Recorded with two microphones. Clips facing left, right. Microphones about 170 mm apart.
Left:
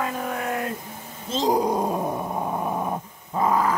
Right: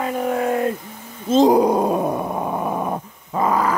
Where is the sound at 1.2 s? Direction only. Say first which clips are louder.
Right 8 dB; 55° right (ahead or behind); by 3.7 s 90° right.